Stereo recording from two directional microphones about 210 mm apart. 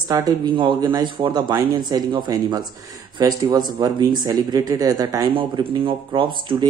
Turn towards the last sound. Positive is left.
turn(degrees=-25)  # may be behind; listen again after turning